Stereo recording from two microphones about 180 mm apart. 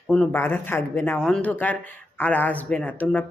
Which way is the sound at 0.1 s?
10° left (ahead or behind).